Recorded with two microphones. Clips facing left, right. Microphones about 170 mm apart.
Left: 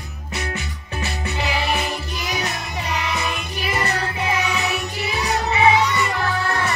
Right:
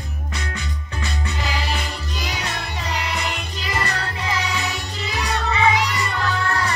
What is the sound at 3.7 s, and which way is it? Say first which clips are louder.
Music: left 2 dB; 20° left (ahead or behind).